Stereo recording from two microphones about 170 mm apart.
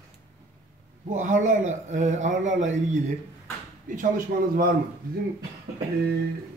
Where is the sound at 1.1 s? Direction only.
45° right (ahead or behind).